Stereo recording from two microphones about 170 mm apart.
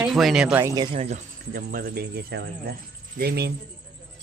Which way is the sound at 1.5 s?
60° right (ahead or behind).